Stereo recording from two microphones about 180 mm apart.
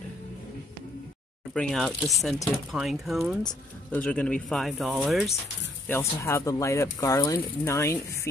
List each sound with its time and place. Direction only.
1.5 s speech: 5° left (ahead or behind)
5.9 s speech: 15° left (ahead or behind)